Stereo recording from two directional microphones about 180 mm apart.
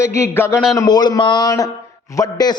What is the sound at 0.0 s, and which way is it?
Speech, 15° left (ahead or behind).